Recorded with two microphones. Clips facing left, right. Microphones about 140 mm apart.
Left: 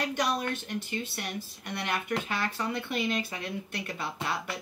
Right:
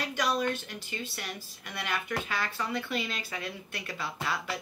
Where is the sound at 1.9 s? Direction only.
25° left (ahead or behind).